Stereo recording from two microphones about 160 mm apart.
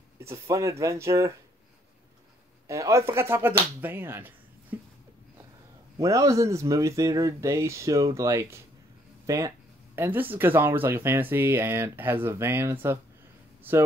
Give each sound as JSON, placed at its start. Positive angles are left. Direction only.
{"t": 0.2, "sound": "speech", "side_deg": -20}
{"t": 2.7, "sound": "speech", "side_deg": -20}
{"t": 3.8, "sound": "a sound", "side_deg": -15}
{"t": 5.9, "sound": "speech", "side_deg": -20}